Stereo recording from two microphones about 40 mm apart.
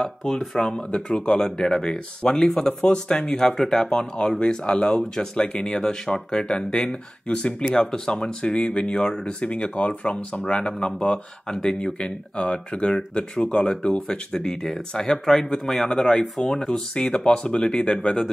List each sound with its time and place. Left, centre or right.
0.3 s speech: centre
0.9 s speech: left; by 3.7 s centre
3.7 s speech: centre
9.2 s speech: left